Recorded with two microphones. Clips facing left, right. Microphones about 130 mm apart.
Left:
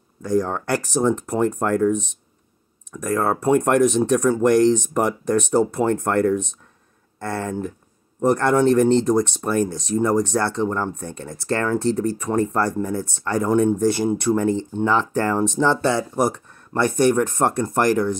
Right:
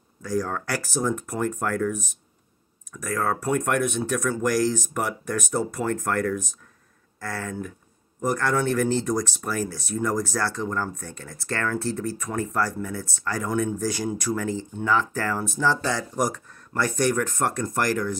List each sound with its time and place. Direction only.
0.2 s speech: 25° left (ahead or behind)
2.9 s speech: 30° left (ahead or behind)